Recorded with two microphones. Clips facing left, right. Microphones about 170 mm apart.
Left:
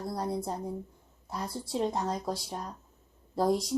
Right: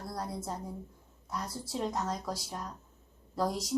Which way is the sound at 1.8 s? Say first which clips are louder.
Left 3 dB; 30° left (ahead or behind).